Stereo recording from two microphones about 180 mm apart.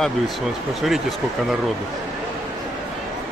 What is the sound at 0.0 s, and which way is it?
Speech, centre (ahead or behind).